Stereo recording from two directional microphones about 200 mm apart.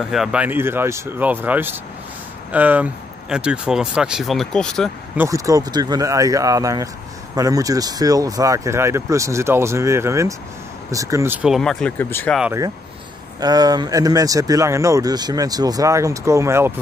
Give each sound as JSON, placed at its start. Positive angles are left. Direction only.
{"t": 0.0, "sound": "speech", "side_deg": 0}
{"t": 5.1, "sound": "speech", "side_deg": -15}
{"t": 11.4, "sound": "speech", "side_deg": 0}
{"t": 13.4, "sound": "speech", "side_deg": -20}